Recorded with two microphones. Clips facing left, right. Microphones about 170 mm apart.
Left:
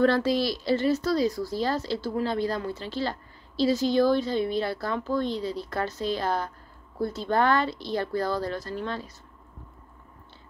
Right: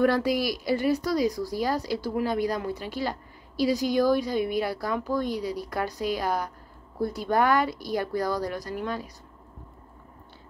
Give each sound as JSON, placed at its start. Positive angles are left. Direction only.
{"t": 0.0, "sound": "a woman's voice", "side_deg": -15}